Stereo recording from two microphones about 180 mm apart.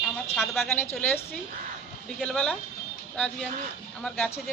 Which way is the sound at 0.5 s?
10° left (ahead or behind).